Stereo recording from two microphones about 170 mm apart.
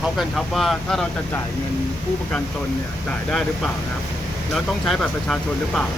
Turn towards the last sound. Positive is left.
turn(degrees=0)  # may be behind; listen again after turning